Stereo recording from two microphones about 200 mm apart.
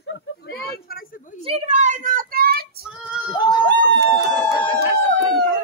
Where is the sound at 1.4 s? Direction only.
35° right (ahead or behind).